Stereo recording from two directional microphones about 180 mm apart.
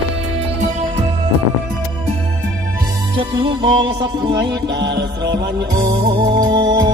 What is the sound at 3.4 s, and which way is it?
Music, 25° right (ahead or behind).